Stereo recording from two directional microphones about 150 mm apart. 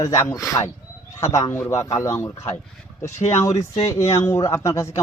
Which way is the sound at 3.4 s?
20° left (ahead or behind).